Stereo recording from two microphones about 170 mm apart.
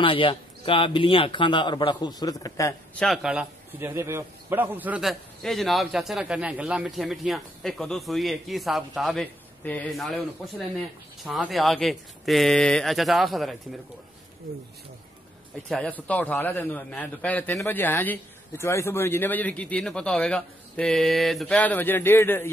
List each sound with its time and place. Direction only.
0.0 s speech: 30° left (ahead or behind)
2.9 s a man's voice: 5° left (ahead or behind)
15.7 s a man's voice: 10° left (ahead or behind)